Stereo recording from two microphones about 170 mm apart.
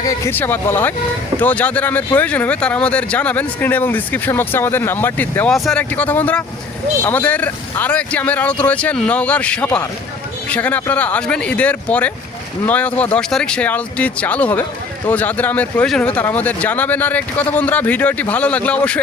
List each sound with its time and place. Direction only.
0.0 s speech: 15° left (ahead or behind)